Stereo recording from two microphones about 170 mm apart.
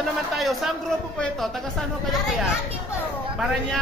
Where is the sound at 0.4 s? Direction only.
Centre (ahead or behind).